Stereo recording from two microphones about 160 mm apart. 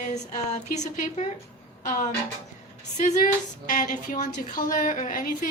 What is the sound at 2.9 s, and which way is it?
A woman's voice, 50° left (ahead or behind).